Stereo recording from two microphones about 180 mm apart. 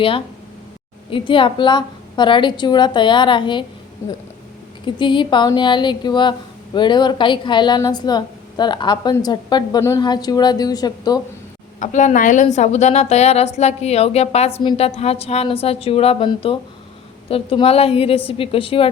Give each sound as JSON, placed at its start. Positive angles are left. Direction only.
{"t": 1.1, "sound": "a woman's voice", "side_deg": 30}
{"t": 4.9, "sound": "a woman's voice", "side_deg": 25}
{"t": 11.8, "sound": "a woman's voice", "side_deg": 45}